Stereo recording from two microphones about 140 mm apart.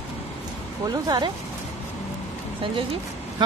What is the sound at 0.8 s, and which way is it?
Speech, 30° right (ahead or behind).